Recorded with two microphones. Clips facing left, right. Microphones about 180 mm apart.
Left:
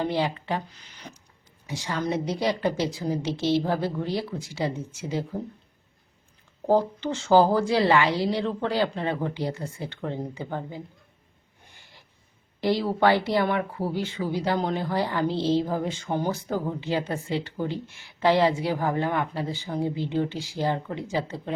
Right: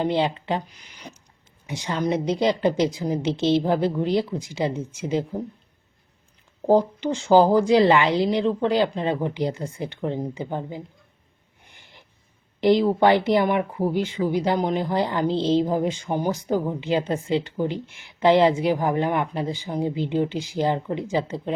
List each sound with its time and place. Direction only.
0.0 s speech: 20° right (ahead or behind)
6.7 s a woman's voice: 15° right (ahead or behind)
11.6 s a sound: 20° right (ahead or behind)
12.5 s speech: 20° right (ahead or behind)